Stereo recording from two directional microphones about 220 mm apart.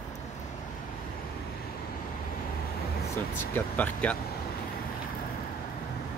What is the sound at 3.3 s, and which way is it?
Speech, 10° left (ahead or behind).